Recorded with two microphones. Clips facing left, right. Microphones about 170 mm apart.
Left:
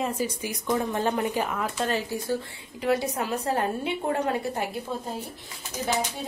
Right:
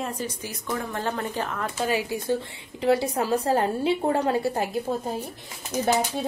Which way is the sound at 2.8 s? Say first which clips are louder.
Right 3 dB; 30° right (ahead or behind).